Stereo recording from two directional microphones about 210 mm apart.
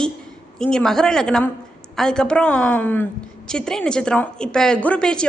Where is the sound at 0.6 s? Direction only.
5° left (ahead or behind).